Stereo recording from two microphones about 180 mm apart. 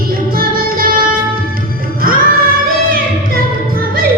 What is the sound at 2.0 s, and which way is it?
Music, 50° right (ahead or behind).